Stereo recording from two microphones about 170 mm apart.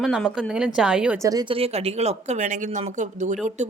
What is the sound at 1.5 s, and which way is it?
Speech, 35° right (ahead or behind).